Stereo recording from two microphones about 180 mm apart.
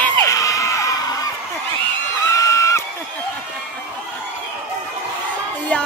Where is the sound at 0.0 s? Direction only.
15° left (ahead or behind).